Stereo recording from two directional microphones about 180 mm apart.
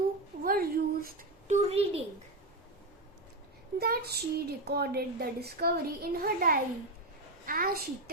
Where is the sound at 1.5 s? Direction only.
35° right (ahead or behind).